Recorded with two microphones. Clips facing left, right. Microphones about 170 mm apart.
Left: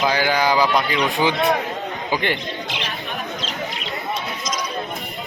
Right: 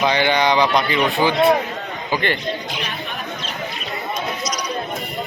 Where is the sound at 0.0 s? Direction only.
5° left (ahead or behind).